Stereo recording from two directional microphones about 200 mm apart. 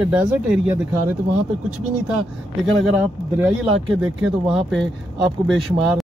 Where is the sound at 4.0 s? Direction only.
5° right (ahead or behind).